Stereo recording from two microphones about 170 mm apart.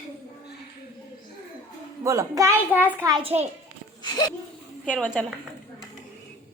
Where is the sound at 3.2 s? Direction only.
40° right (ahead or behind).